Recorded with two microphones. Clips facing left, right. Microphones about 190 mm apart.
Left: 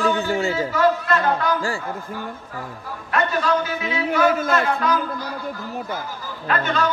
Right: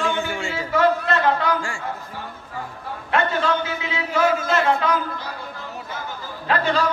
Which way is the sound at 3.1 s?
25° right (ahead or behind).